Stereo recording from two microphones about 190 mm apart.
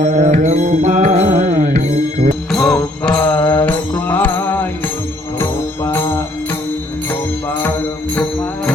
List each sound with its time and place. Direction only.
0.0 s music: 40° right (ahead or behind)
2.5 s music: centre (ahead or behind)
8.1 s music: 10° left (ahead or behind)